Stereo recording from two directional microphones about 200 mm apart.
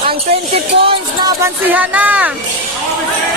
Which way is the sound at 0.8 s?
25° right (ahead or behind).